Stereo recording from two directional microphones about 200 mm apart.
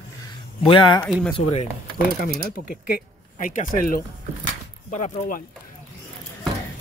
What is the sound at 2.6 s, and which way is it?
Speech, 50° left (ahead or behind).